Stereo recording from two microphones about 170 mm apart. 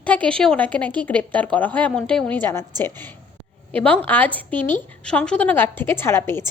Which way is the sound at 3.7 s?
10° left (ahead or behind).